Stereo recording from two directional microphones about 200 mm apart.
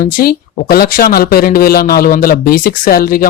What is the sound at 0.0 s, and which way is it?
Speech, 45° left (ahead or behind).